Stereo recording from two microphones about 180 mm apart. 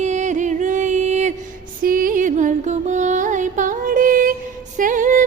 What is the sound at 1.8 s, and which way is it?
Music, 50° right (ahead or behind).